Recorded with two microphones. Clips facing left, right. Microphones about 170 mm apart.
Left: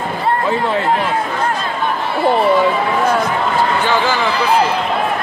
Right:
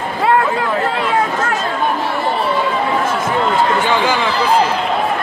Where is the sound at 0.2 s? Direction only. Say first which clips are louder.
Right 3 dB; 90° right.